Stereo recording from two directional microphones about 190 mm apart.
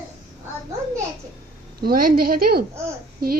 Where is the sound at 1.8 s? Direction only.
50° right (ahead or behind).